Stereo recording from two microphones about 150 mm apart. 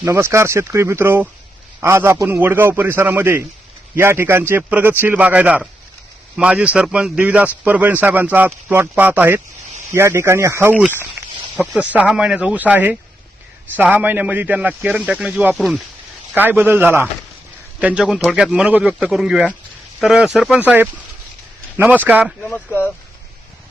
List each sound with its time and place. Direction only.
0.0 s a man's voice: 20° right (ahead or behind)
11.5 s speech: 10° left (ahead or behind)
11.8 s a man's voice: 10° right (ahead or behind)
22.4 s speech: 10° left (ahead or behind)